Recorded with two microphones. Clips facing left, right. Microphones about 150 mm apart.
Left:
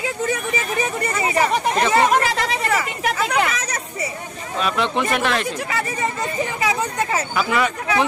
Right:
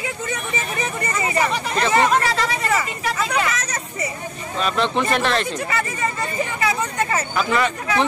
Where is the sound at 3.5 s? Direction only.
10° left (ahead or behind).